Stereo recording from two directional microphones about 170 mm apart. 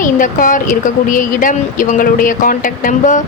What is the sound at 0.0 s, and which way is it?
Speech, 50° left (ahead or behind).